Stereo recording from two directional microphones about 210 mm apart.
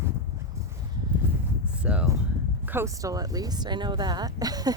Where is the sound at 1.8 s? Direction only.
5° right (ahead or behind).